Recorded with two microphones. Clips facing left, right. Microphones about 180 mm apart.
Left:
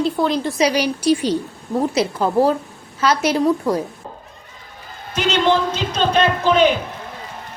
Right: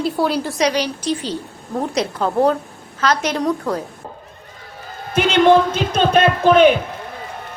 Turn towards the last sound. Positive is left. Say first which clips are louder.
# right 3 dB
turn(degrees=-55)  # may be behind; listen again after turning